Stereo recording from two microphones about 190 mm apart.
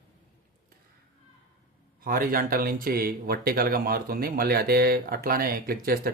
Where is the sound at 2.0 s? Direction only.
50° right (ahead or behind).